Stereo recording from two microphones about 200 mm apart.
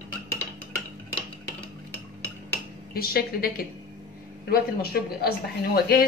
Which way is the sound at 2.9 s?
50° left (ahead or behind).